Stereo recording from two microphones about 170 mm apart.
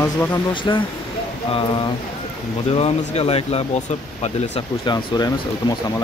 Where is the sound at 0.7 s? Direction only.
25° left (ahead or behind).